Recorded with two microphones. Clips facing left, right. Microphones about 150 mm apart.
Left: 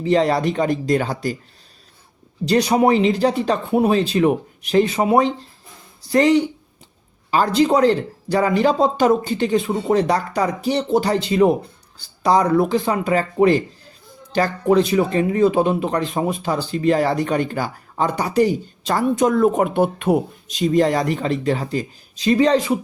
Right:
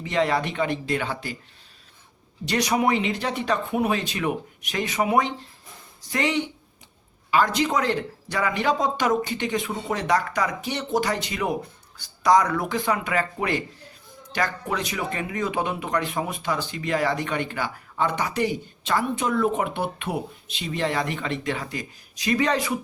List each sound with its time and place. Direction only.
0.0 s speech: 35° left (ahead or behind)
2.5 s speech: 30° left (ahead or behind)